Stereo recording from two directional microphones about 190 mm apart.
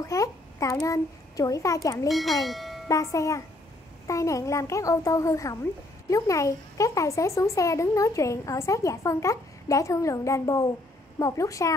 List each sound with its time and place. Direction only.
0.0 s a child's voice: 15° left (ahead or behind)
2.0 s speech: centre (ahead or behind)
2.9 s speech: 15° left (ahead or behind)